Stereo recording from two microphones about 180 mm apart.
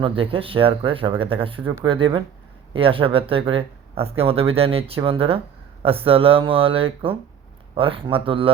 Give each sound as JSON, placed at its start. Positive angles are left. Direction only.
{"t": 0.0, "sound": "speech", "side_deg": -30}